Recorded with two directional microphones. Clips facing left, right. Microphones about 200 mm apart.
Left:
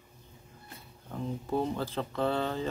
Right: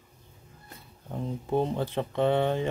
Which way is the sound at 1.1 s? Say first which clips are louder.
Right 3 dB; 20° right (ahead or behind).